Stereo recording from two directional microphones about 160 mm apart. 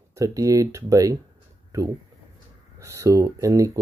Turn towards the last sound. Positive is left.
turn(degrees=-20)  # may be behind; listen again after turning